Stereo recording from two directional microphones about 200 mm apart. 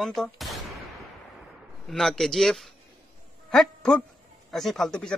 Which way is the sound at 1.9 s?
Centre (ahead or behind).